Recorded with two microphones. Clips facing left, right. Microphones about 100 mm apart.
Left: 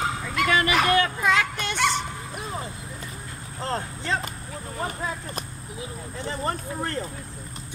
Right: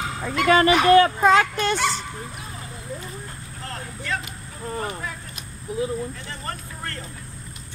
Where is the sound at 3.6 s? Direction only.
30° left (ahead or behind).